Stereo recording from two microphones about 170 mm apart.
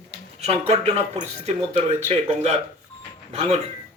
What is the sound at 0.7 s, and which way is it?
Speech, 40° right (ahead or behind).